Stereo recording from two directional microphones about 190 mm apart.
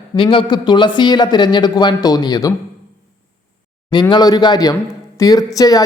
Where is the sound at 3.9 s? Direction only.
25° left (ahead or behind).